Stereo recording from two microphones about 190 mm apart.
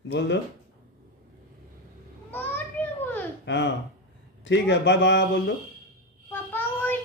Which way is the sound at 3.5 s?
70° left (ahead or behind).